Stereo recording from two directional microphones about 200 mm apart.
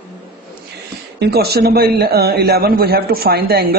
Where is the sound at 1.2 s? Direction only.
50° right (ahead or behind).